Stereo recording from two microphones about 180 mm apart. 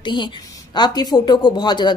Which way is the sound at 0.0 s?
25° left (ahead or behind).